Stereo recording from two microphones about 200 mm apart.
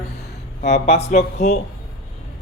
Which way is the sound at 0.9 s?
30° left (ahead or behind).